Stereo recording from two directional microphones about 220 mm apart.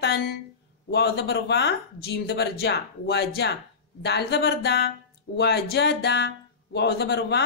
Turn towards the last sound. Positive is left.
turn(degrees=50)  # may be behind; listen again after turning